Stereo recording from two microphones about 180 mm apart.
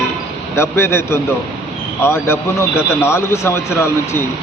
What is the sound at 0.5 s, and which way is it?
A man's voice, 15° left (ahead or behind).